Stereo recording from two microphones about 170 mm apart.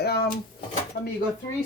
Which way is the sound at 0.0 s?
70° left (ahead or behind).